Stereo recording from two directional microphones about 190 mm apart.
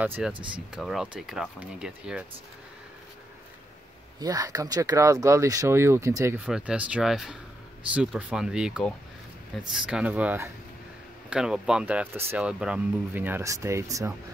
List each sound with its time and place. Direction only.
0.0 s speech: 10° right (ahead or behind)
4.2 s speech: 20° right (ahead or behind)